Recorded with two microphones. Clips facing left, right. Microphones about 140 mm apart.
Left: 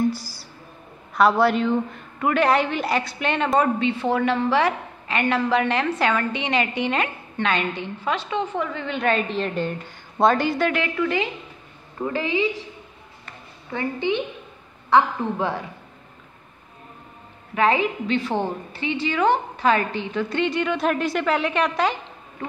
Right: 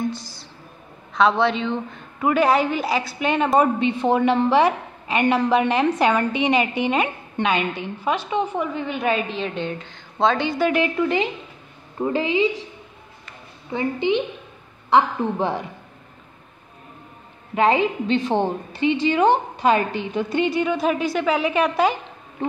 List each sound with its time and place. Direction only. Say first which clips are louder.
0.0 s music: left 3 dB; 10° left (ahead or behind)
1.1 s a man's voice: left 1 dB; 5° left (ahead or behind)
2.1 s a woman's voice: right 1 dB; 10° right (ahead or behind)
10.7 s a woman's voice: right 3 dB; 20° right (ahead or behind)
13.7 s a woman's voice: right 3 dB; 15° right (ahead or behind)
17.6 s a woman's voice: right 2 dB; 20° right (ahead or behind)
22.4 s a sound: right 7 dB; 25° right (ahead or behind)